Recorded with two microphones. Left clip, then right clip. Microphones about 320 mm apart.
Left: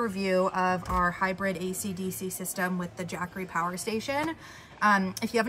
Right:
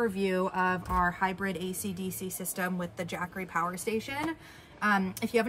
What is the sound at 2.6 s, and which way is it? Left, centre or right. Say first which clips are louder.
Speech: left 2 dB; centre.